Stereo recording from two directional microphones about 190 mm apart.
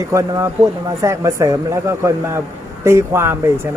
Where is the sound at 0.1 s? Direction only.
15° right (ahead or behind).